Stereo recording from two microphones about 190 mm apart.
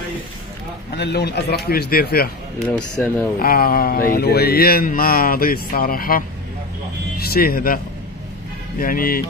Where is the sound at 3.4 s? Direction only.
50° left (ahead or behind).